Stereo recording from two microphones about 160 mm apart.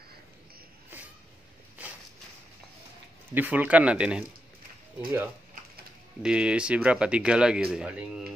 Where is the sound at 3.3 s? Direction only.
10° right (ahead or behind).